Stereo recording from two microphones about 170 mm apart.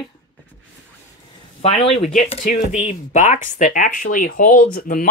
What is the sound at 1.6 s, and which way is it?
Speech, 40° left (ahead or behind).